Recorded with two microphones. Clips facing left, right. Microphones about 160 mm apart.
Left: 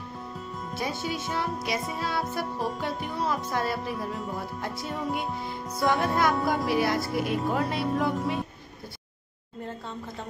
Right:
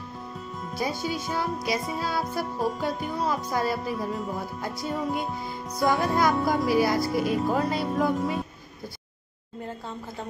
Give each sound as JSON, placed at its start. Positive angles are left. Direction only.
{"t": 0.6, "sound": "music", "side_deg": 0}